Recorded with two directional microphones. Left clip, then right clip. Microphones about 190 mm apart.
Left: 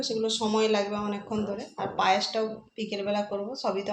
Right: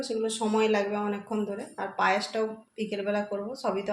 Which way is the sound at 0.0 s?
15° right (ahead or behind).